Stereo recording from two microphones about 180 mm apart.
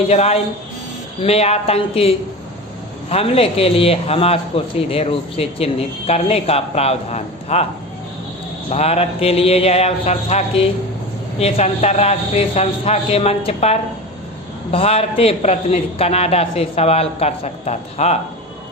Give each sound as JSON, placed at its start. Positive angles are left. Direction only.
{"t": 0.1, "sound": "a man's voice", "side_deg": 35}
{"t": 3.1, "sound": "a man's voice", "side_deg": 35}
{"t": 8.7, "sound": "a man's voice", "side_deg": 35}